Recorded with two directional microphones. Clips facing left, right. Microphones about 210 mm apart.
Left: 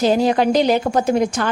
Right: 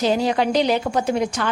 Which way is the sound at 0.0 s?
45° left (ahead or behind).